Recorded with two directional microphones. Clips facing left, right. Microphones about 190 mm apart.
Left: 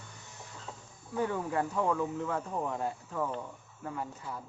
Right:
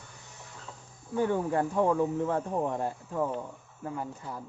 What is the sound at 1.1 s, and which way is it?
Speech, 30° right (ahead or behind).